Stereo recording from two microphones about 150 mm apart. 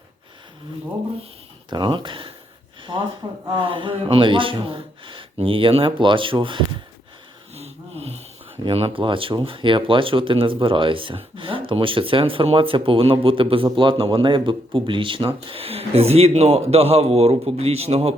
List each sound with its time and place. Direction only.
1.7 s speech: 30° right (ahead or behind)
7.5 s wheeze: 45° right (ahead or behind)
8.6 s a man's voice: 40° right (ahead or behind)